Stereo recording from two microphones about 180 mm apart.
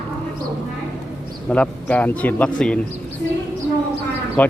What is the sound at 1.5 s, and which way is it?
Speech, 10° left (ahead or behind).